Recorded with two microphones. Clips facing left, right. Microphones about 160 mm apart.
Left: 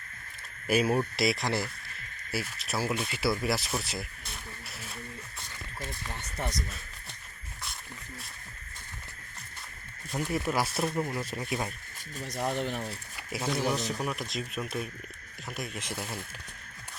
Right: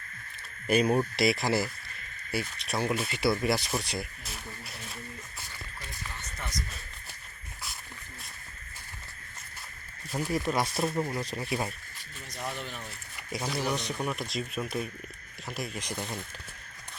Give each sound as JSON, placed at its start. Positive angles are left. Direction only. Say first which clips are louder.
{"t": 0.7, "sound": "speech", "louder": "right 1 dB", "side_deg": 5}
{"t": 10.1, "sound": "speech", "louder": "right 1 dB", "side_deg": 0}
{"t": 12.3, "sound": "speech", "louder": "left 6 dB", "side_deg": 55}
{"t": 13.1, "sound": "speech", "louder": "left 1 dB", "side_deg": 0}